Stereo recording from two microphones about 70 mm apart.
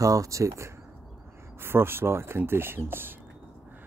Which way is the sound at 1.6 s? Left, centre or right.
Right.